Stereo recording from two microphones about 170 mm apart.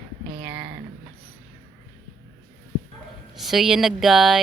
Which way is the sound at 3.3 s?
Centre (ahead or behind).